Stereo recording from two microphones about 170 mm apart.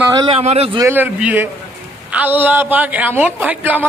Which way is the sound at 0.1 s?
25° right (ahead or behind).